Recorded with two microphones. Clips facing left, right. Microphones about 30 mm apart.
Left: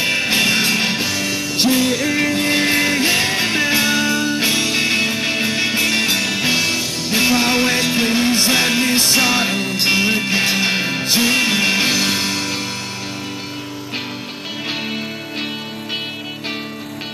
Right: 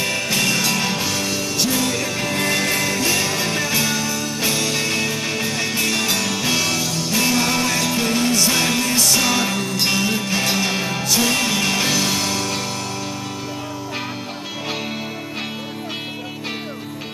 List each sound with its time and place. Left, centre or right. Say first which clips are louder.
0.0 s music: left 4 dB; left
1.0 s music: left 2 dB; centre